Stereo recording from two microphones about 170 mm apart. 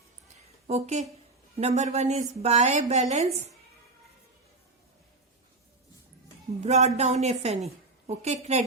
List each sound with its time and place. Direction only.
0.7 s speech: 40° right (ahead or behind)
6.6 s speech: 40° right (ahead or behind)